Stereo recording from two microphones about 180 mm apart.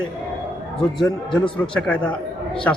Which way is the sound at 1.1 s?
25° left (ahead or behind).